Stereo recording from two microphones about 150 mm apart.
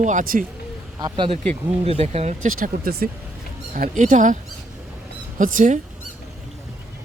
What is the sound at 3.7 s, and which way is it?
Speech, 60° right (ahead or behind).